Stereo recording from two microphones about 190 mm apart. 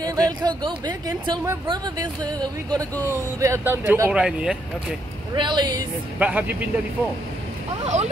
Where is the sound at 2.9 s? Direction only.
10° left (ahead or behind).